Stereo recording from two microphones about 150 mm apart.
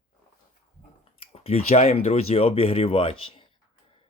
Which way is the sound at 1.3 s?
40° left (ahead or behind).